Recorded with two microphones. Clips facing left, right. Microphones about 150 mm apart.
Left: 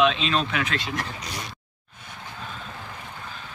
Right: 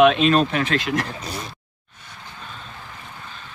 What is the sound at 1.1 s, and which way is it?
Speech, 30° right (ahead or behind).